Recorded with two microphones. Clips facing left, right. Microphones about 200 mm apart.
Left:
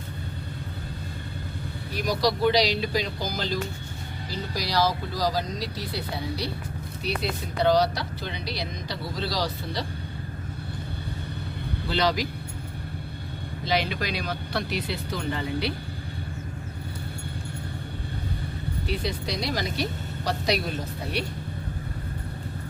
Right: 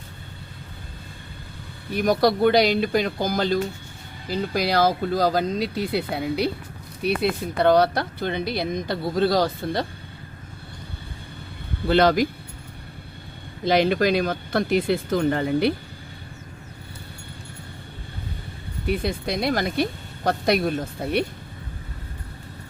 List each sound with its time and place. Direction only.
1.9 s speech: 55° right (ahead or behind)
11.9 s speech: 55° right (ahead or behind)
13.7 s speech: 50° right (ahead or behind)
18.9 s speech: 55° right (ahead or behind)